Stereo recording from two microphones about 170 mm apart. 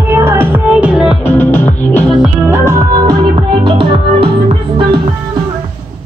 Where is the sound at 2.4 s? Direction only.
15° right (ahead or behind); by 4.3 s 30° right (ahead or behind).